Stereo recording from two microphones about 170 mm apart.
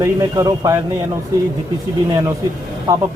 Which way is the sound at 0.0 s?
20° right (ahead or behind).